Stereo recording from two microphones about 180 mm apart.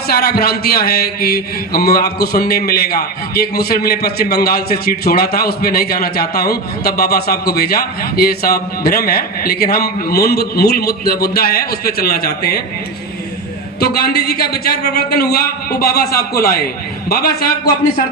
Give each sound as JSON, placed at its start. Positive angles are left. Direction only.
{"t": 0.1, "sound": "speech", "side_deg": 60}
{"t": 13.7, "sound": "speech", "side_deg": 60}